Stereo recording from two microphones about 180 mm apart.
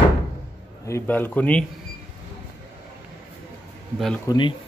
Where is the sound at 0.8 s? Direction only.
10° left (ahead or behind).